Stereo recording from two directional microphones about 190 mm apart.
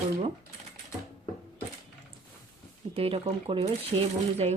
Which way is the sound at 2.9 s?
30° right (ahead or behind).